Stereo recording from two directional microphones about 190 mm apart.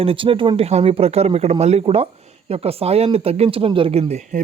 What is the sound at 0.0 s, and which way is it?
Speech, 30° right (ahead or behind).